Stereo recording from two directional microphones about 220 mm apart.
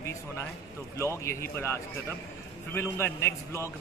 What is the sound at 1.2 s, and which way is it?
A man's voice, 10° left (ahead or behind).